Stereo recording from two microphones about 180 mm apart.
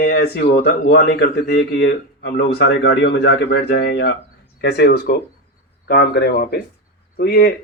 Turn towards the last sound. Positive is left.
turn(degrees=60)  # may be behind; listen again after turning